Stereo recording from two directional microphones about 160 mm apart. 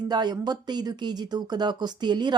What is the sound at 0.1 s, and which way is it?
Speech, 25° right (ahead or behind).